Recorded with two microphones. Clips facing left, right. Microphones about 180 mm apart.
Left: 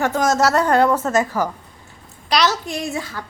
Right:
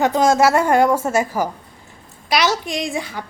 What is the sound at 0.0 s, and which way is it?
A woman's voice, 15° right (ahead or behind).